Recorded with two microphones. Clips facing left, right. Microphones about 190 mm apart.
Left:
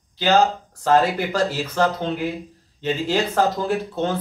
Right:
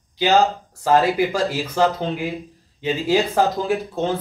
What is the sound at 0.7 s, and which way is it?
Speech, 10° right (ahead or behind).